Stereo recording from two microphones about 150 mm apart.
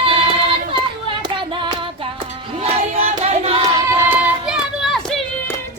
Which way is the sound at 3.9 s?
15° right (ahead or behind).